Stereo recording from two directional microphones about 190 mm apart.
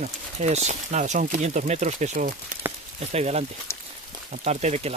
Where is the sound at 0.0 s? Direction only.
35° right (ahead or behind).